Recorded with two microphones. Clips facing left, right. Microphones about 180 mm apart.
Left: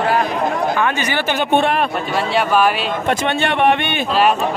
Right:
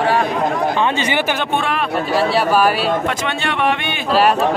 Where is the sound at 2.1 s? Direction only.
35° right (ahead or behind).